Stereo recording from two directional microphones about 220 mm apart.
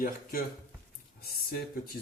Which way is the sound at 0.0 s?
40° left (ahead or behind).